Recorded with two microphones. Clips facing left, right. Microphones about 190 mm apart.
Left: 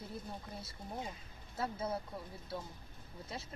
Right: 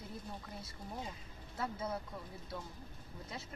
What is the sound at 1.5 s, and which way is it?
Speech, 30° left (ahead or behind).